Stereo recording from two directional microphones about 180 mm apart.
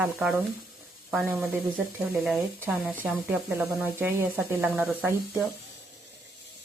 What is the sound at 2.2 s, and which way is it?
Speech, 5° right (ahead or behind).